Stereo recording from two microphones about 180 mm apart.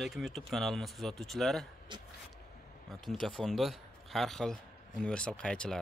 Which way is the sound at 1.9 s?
25° right (ahead or behind).